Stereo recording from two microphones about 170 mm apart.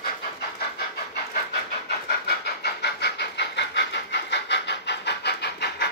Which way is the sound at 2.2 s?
75° left (ahead or behind).